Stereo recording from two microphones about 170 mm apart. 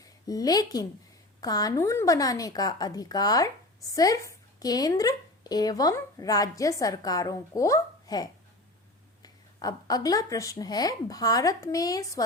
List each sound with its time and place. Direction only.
0.0 s a woman's voice: 20° left (ahead or behind)